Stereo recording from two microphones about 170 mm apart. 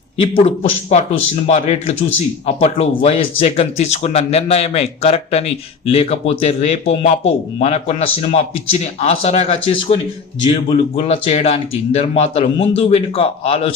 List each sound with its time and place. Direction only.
0.2 s speech: 35° left (ahead or behind)